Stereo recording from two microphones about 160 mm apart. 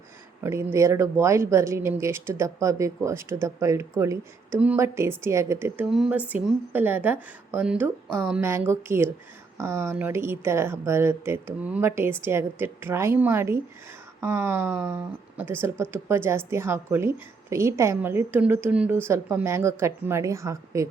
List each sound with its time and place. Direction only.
0.4 s speech: 15° right (ahead or behind)